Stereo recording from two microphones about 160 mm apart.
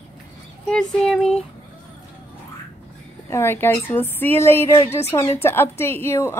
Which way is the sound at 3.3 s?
15° left (ahead or behind).